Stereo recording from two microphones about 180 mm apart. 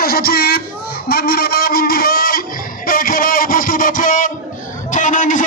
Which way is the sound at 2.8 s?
50° left (ahead or behind).